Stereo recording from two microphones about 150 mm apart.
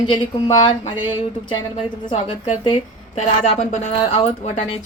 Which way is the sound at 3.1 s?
45° left (ahead or behind).